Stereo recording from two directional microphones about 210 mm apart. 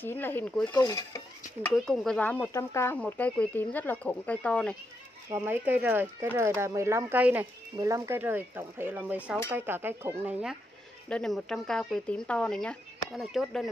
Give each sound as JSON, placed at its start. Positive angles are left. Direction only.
{"t": 0.0, "sound": "speech", "side_deg": 10}
{"t": 1.9, "sound": "speech", "side_deg": 5}
{"t": 5.3, "sound": "speech", "side_deg": -10}
{"t": 11.1, "sound": "speech", "side_deg": 5}